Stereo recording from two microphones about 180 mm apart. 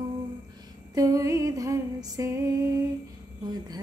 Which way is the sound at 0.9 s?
20° right (ahead or behind).